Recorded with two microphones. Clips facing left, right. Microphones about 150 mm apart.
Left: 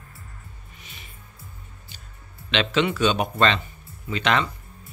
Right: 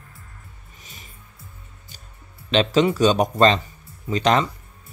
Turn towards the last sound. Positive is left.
turn(degrees=-40)  # may be behind; listen again after turning